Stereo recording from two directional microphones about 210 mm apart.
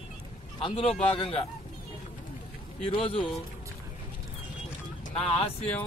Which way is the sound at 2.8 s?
25° left (ahead or behind).